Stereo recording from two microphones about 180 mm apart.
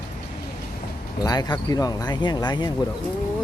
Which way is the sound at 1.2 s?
20° left (ahead or behind).